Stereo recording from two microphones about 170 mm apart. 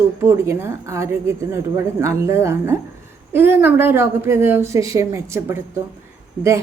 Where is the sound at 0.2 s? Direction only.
15° right (ahead or behind).